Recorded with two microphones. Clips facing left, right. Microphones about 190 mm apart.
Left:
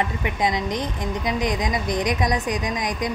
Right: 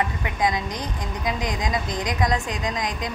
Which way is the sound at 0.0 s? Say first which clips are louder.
Left 1 dB; 20° left (ahead or behind).